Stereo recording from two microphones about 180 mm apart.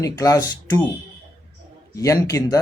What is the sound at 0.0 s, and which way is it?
Speech, 20° left (ahead or behind).